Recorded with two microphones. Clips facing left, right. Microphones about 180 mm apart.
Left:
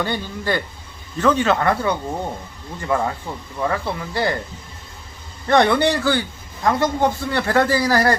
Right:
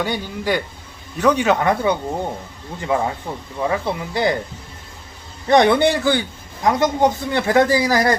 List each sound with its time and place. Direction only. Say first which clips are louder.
0.0 s a man's voice: right 1 dB; 10° right (ahead or behind)
5.5 s a man's voice: right 2 dB; 15° right (ahead or behind)